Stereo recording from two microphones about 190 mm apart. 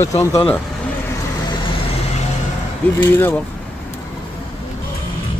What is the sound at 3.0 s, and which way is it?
Speech, 10° left (ahead or behind).